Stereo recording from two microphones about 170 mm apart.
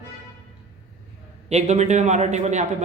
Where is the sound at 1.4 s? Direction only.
40° right (ahead or behind).